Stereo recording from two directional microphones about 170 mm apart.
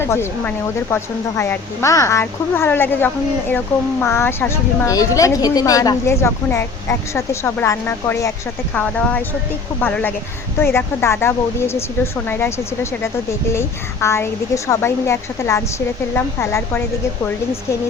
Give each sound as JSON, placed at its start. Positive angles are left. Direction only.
{"t": 0.0, "sound": "a woman's voice", "side_deg": 15}